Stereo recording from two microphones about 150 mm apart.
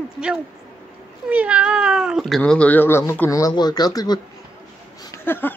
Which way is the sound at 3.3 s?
25° left (ahead or behind).